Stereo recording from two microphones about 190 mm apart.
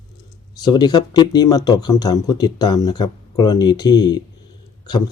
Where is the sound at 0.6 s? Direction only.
20° left (ahead or behind).